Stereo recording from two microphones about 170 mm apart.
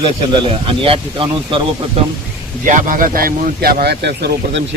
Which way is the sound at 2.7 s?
50° right (ahead or behind).